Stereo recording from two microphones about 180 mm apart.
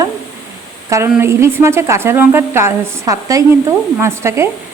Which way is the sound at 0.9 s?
15° right (ahead or behind).